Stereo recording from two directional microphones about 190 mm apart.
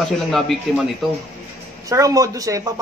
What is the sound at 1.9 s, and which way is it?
Speech, 15° right (ahead or behind).